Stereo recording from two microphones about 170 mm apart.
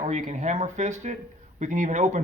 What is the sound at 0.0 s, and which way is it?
Speech, 45° right (ahead or behind).